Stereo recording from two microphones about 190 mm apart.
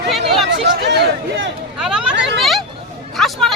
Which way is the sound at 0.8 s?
65° right (ahead or behind).